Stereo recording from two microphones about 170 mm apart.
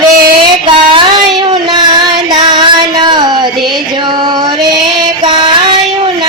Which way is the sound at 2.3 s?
25° right (ahead or behind).